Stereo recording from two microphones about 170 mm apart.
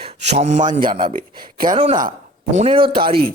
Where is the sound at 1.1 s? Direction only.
55° right (ahead or behind).